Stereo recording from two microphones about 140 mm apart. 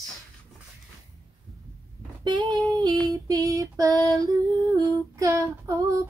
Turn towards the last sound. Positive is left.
turn(degrees=-25)  # may be behind; listen again after turning